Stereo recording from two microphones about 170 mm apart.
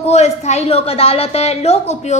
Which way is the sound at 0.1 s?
40° left (ahead or behind).